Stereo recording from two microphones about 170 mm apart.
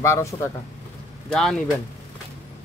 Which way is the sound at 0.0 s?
15° left (ahead or behind).